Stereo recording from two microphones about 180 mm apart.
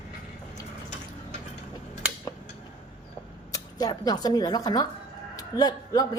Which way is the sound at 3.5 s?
20° left (ahead or behind).